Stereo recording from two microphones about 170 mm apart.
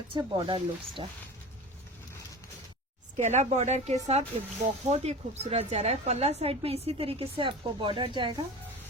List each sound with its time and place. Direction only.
0.1 s speech: 30° right (ahead or behind)
3.2 s a woman's voice: 45° right (ahead or behind); by 8.4 s 30° right (ahead or behind)